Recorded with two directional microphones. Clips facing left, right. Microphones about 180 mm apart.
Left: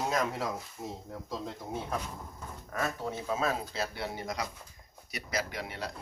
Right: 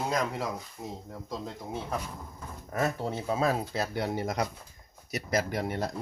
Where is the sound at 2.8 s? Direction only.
30° right (ahead or behind).